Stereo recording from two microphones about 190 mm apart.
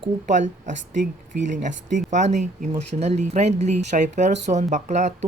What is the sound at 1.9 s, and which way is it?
Speech, 40° right (ahead or behind).